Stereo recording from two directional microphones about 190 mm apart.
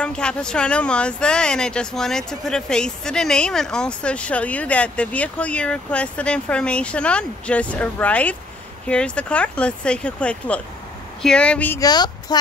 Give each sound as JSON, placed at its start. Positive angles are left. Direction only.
{"t": 0.0, "sound": "speech", "side_deg": 5}
{"t": 11.9, "sound": "speech", "side_deg": 20}